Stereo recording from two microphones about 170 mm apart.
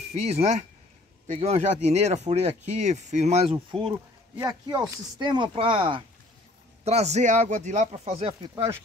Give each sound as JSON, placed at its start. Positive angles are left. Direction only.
{"t": 0.1, "sound": "speech", "side_deg": -40}
{"t": 4.4, "sound": "speech", "side_deg": -20}
{"t": 6.8, "sound": "speech", "side_deg": -40}